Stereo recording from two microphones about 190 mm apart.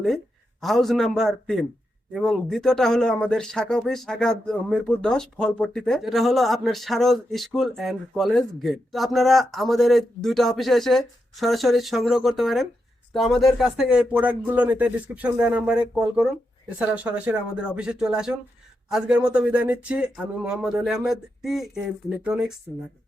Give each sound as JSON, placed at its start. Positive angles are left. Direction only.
{"t": 0.6, "sound": "speech", "side_deg": 0}